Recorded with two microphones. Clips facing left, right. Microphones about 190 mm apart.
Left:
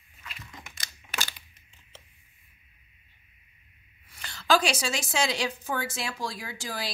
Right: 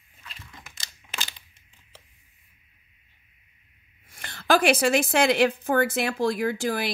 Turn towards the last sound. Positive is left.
turn(degrees=-55)  # may be behind; listen again after turning